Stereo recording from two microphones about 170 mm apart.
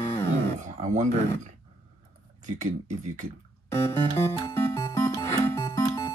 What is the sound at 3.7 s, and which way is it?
Music, 20° left (ahead or behind).